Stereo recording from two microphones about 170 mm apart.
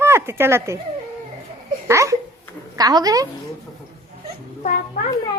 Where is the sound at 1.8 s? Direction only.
20° right (ahead or behind).